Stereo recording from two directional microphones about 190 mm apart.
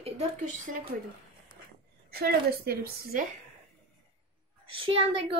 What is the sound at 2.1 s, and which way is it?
A woman's voice, 55° right (ahead or behind).